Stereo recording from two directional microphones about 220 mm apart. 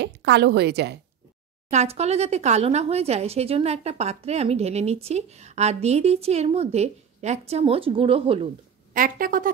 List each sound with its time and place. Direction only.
0.0 s a woman's voice: 50° right (ahead or behind)
1.7 s speech: 30° right (ahead or behind)
8.9 s a woman's voice: 40° right (ahead or behind)